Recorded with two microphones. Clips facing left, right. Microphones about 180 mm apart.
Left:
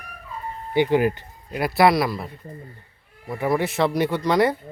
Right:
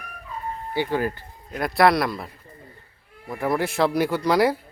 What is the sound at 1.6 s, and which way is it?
Speech, centre (ahead or behind).